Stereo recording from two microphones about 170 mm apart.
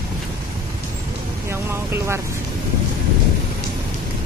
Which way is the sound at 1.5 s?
15° right (ahead or behind).